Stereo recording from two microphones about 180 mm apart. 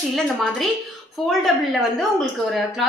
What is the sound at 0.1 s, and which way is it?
A woman's voice, centre (ahead or behind).